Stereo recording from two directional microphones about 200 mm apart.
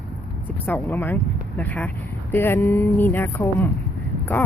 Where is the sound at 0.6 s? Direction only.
10° left (ahead or behind).